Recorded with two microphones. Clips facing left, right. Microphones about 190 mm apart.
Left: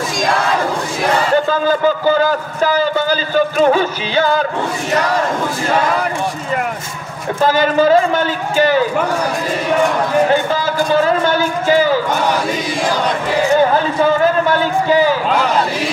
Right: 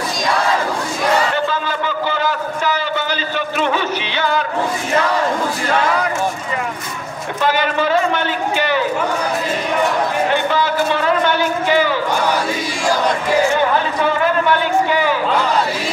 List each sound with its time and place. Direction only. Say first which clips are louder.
1.3 s a man's voice: left 6 dB; 40° left (ahead or behind)
7.4 s a man's voice: left 5 dB; 40° left (ahead or behind)
10.3 s a man's voice: left 1 dB; 40° left (ahead or behind)
14.0 s a man's voice: left 3 dB; 40° left (ahead or behind)